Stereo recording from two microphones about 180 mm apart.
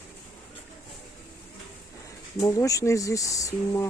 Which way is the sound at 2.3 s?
20° left (ahead or behind).